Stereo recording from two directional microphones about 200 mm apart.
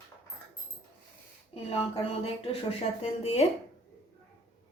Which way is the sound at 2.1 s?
30° left (ahead or behind).